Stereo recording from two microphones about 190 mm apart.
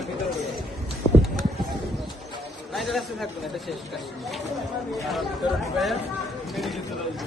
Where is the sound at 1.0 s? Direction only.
35° left (ahead or behind).